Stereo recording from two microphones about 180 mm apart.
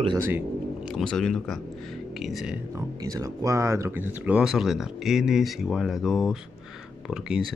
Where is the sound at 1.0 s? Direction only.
5° left (ahead or behind).